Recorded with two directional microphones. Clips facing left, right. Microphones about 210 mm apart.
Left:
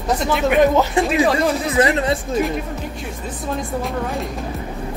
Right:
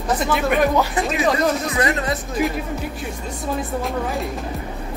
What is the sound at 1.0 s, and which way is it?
Speech, 25° left (ahead or behind).